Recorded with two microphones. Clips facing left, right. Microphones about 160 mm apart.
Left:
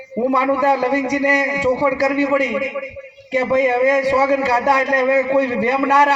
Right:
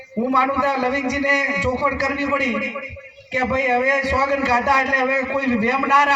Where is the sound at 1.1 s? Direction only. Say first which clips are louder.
Left 4 dB; 40° left (ahead or behind).